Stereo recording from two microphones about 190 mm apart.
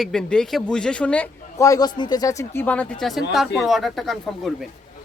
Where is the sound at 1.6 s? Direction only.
20° left (ahead or behind).